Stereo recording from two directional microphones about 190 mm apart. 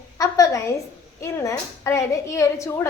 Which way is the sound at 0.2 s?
20° left (ahead or behind).